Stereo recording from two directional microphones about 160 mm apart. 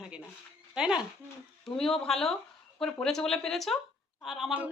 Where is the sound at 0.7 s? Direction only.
5° right (ahead or behind).